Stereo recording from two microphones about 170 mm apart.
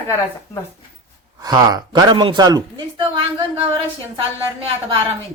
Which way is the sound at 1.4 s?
20° right (ahead or behind).